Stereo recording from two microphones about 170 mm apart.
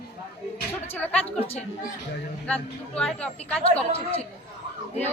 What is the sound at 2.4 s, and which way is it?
Speech, 5° left (ahead or behind).